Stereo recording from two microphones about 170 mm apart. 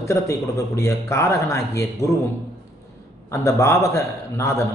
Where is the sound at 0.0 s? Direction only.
15° left (ahead or behind).